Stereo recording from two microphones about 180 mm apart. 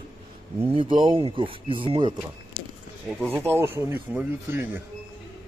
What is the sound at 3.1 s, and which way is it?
Speech, 5° left (ahead or behind).